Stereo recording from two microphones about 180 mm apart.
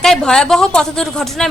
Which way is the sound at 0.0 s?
5° left (ahead or behind).